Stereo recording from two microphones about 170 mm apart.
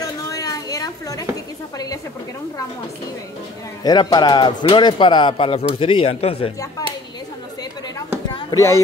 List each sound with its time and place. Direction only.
0.0 s a sound: 20° left (ahead or behind)
3.8 s speech: 25° left (ahead or behind)
8.4 s speech: 20° left (ahead or behind)